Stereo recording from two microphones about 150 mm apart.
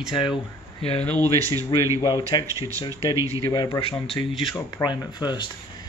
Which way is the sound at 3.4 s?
25° left (ahead or behind).